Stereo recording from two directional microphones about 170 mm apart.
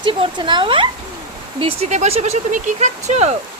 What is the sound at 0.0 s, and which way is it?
Speech, 30° right (ahead or behind).